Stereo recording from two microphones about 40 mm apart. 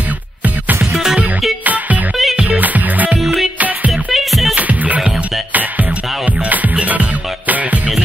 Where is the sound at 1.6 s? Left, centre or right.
Right.